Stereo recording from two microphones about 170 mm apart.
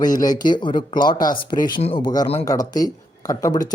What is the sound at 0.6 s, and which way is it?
Speech, 30° left (ahead or behind).